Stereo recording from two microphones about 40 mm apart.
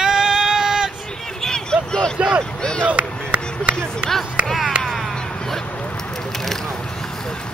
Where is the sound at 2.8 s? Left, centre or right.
Right.